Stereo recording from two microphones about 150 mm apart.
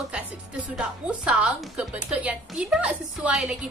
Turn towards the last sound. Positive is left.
turn(degrees=-5)  # may be behind; listen again after turning